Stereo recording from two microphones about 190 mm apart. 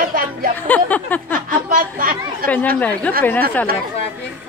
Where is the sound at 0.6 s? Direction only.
10° left (ahead or behind).